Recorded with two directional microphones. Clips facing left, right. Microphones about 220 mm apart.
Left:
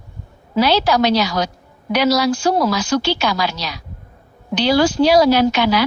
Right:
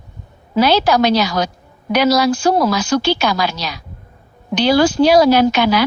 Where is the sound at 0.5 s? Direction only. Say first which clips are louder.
Right 2 dB; 50° right (ahead or behind).